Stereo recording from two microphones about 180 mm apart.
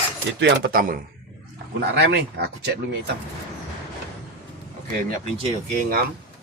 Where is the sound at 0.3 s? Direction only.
70° right (ahead or behind); by 1.0 s 50° right (ahead or behind).